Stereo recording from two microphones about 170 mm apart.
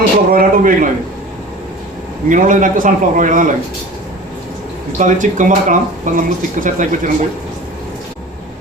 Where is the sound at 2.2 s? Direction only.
50° right (ahead or behind).